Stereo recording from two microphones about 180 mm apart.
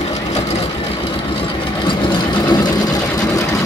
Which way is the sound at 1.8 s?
25° left (ahead or behind).